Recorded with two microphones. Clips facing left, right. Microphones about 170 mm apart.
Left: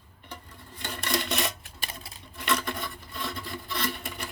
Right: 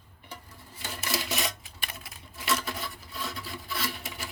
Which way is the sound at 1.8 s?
30° left (ahead or behind).